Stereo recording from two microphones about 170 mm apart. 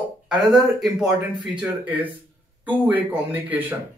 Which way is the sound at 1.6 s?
10° right (ahead or behind).